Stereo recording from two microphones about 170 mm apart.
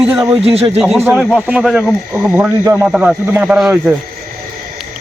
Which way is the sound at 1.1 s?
Centre (ahead or behind).